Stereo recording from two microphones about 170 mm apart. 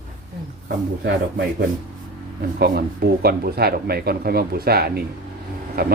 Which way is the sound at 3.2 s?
65° right (ahead or behind).